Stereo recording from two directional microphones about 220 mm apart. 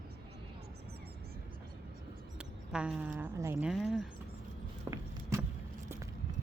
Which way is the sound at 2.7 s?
5° right (ahead or behind).